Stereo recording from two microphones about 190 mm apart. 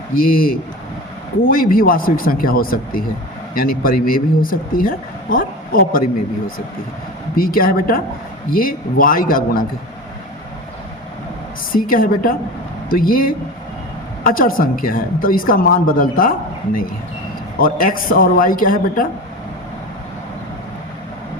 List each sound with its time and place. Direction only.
0.1 s a woman's voice: 50° left (ahead or behind)
7.3 s a woman's voice: 50° left (ahead or behind)
11.7 s a woman's voice: 45° left (ahead or behind)
17.6 s a woman's voice: 50° left (ahead or behind)